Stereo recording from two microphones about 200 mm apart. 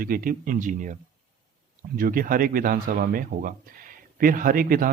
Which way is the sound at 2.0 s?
45° right (ahead or behind).